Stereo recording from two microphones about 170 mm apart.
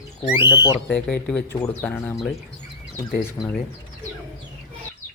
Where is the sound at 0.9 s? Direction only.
5° left (ahead or behind).